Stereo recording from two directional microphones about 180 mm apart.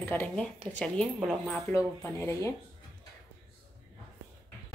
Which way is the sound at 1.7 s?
15° left (ahead or behind).